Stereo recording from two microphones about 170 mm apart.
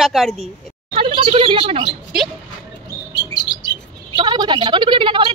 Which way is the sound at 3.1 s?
25° left (ahead or behind).